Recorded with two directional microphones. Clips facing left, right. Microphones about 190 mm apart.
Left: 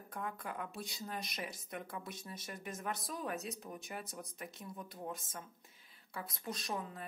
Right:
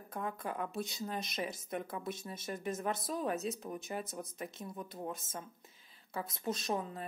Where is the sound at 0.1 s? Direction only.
25° right (ahead or behind).